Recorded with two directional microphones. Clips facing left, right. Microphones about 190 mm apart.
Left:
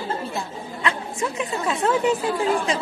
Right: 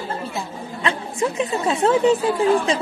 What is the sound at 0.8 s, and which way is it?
A woman's voice, 25° right (ahead or behind).